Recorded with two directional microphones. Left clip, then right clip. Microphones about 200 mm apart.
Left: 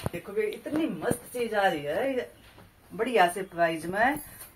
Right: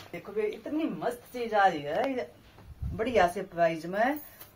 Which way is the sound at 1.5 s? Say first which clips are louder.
Right 2 dB; 10° right (ahead or behind).